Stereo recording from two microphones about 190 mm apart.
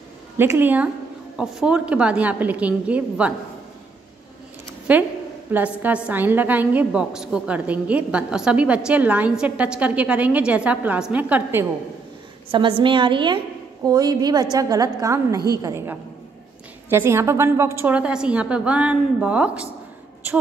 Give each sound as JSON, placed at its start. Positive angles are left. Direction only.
{"t": 0.4, "sound": "a woman's voice", "side_deg": -10}
{"t": 4.9, "sound": "a woman's voice", "side_deg": -5}
{"t": 12.4, "sound": "a woman's voice", "side_deg": -25}